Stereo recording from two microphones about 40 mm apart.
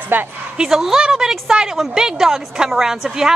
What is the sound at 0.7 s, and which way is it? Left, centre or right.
A woman's voice, centre.